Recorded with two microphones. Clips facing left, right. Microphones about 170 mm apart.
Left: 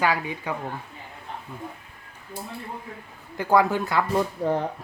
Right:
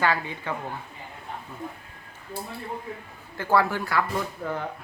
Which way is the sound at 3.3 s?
15° left (ahead or behind).